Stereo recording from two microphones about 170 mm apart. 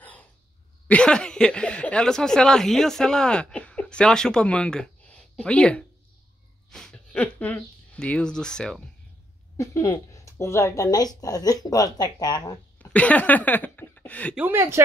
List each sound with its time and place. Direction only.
0.8 s speech: 5° left (ahead or behind)
9.6 s a woman's voice: 20° left (ahead or behind)
12.7 s speech: 10° left (ahead or behind)
14.3 s speech: 10° right (ahead or behind)